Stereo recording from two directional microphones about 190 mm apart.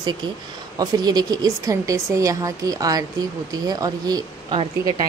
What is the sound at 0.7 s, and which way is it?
Speech, 20° right (ahead or behind).